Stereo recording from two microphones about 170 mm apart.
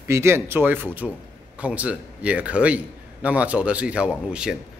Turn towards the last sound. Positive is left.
turn(degrees=-5)  # may be behind; listen again after turning